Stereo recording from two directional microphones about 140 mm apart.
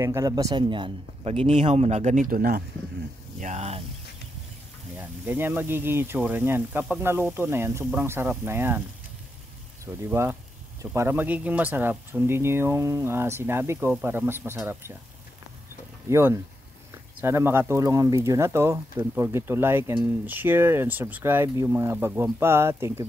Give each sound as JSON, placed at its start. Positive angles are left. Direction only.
{"t": 0.0, "sound": "speech", "side_deg": -20}
{"t": 3.3, "sound": "speech", "side_deg": -55}
{"t": 4.9, "sound": "speech", "side_deg": -15}
{"t": 10.0, "sound": "speech", "side_deg": -20}
{"t": 16.1, "sound": "speech", "side_deg": -15}